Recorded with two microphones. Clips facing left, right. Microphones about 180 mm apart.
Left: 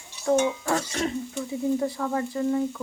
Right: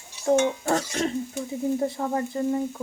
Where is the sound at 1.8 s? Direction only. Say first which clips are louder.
Right 1 dB; 30° right (ahead or behind).